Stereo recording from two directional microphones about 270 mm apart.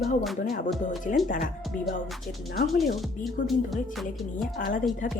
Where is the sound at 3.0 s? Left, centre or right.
Centre.